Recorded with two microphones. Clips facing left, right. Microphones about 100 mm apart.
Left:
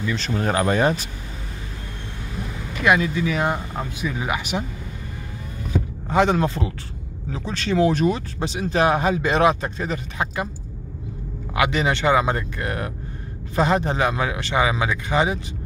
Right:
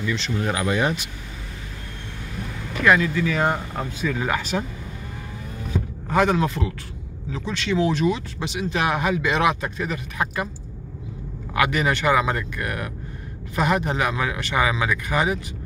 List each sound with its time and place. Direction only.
0.1 s speech: 40° left (ahead or behind)
2.8 s speech: 20° left (ahead or behind)
6.0 s speech: 20° left (ahead or behind)
7.7 s speech: 50° left (ahead or behind); by 10.5 s 20° left (ahead or behind)
11.5 s speech: 20° left (ahead or behind)